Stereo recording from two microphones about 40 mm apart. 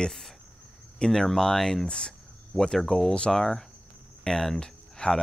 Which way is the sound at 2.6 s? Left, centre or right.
Centre.